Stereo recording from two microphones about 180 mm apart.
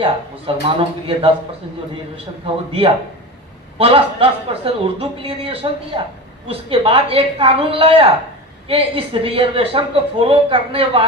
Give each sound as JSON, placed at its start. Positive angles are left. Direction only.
{"t": 0.0, "sound": "a woman's voice", "side_deg": -30}
{"t": 3.8, "sound": "a woman's voice", "side_deg": -30}